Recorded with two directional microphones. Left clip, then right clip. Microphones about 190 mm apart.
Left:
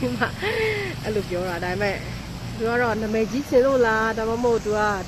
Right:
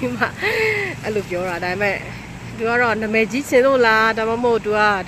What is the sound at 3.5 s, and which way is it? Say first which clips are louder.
Speech: right 4 dB; 15° right (ahead or behind).